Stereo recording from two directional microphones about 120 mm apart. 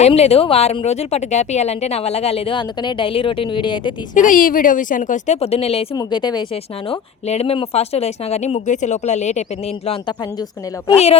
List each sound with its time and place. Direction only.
0.1 s speech: 55° left (ahead or behind)
4.1 s speech: 90° left; by 5.8 s 55° left (ahead or behind)
5.9 s speech: 35° left (ahead or behind)
7.3 s speech: 55° left (ahead or behind); by 9.4 s 75° left (ahead or behind)
9.8 s a man's voice: 50° left (ahead or behind)